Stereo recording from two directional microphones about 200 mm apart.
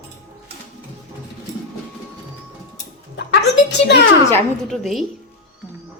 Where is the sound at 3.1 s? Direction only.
55° left (ahead or behind).